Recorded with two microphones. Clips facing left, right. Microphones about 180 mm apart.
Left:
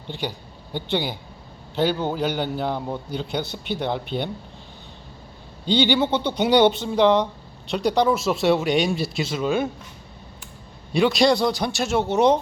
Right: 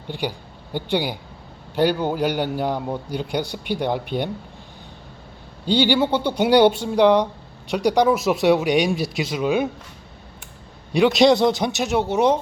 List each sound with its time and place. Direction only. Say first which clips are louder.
0.1 s a man's voice: right 3 dB; 10° right (ahead or behind)
5.6 s a man's voice: right 1 dB; 10° right (ahead or behind)
10.9 s a man's voice: right 3 dB; 20° right (ahead or behind)